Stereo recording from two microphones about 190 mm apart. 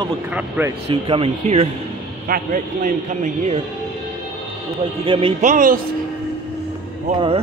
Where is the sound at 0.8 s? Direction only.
30° right (ahead or behind).